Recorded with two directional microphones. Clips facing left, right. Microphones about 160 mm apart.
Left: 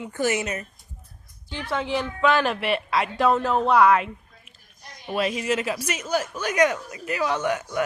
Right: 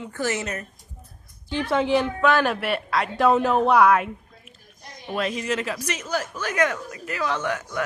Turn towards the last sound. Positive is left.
turn(degrees=15)  # may be behind; listen again after turning